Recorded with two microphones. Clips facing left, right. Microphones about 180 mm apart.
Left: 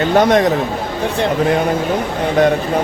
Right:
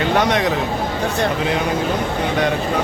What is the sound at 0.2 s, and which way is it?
Speech, 45° left (ahead or behind).